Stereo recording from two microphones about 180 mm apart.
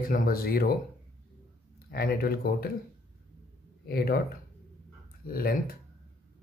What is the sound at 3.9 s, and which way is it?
Speech, 60° left (ahead or behind).